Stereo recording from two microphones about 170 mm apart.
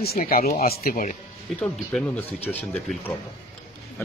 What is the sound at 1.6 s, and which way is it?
Speech, 10° left (ahead or behind).